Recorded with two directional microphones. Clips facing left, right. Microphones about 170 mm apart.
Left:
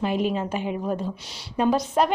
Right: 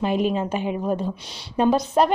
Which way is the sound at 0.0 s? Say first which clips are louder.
Right 2 dB; 20° right (ahead or behind).